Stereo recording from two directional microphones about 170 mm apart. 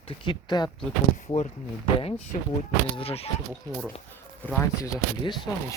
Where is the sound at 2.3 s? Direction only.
45° left (ahead or behind).